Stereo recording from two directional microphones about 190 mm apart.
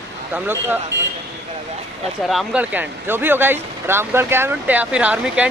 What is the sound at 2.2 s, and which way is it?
Speech, 5° right (ahead or behind).